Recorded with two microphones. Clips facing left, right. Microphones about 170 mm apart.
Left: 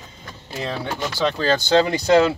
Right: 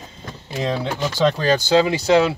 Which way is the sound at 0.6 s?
15° right (ahead or behind).